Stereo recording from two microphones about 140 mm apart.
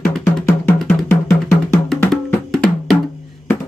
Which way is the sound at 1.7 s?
10° left (ahead or behind).